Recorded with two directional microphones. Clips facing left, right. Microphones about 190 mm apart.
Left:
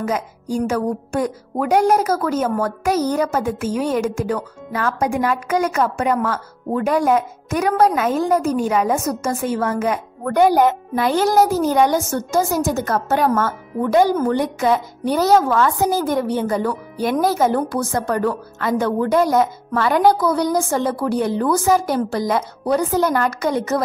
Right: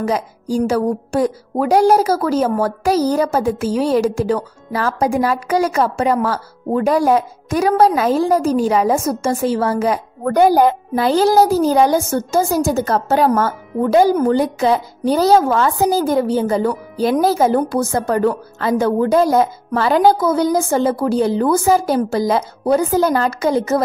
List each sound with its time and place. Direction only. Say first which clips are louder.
0.0 s a woman's voice: right 3 dB; 35° right (ahead or behind)